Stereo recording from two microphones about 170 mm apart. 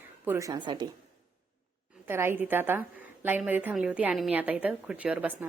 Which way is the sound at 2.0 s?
15° right (ahead or behind).